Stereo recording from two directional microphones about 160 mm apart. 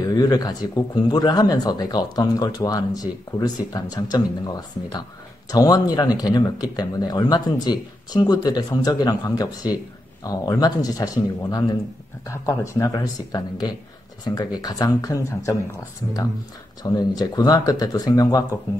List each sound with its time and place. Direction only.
0.0 s speech: 25° left (ahead or behind)
12.3 s speech: 20° left (ahead or behind)
16.8 s speech: 25° left (ahead or behind)